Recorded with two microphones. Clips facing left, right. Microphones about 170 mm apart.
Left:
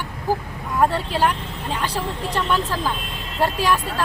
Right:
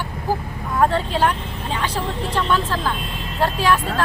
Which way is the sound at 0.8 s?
10° left (ahead or behind).